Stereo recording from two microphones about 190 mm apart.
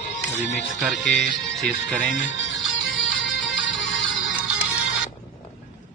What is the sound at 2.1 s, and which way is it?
Music, 80° left.